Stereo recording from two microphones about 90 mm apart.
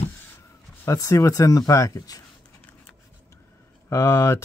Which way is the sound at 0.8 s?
35° left (ahead or behind).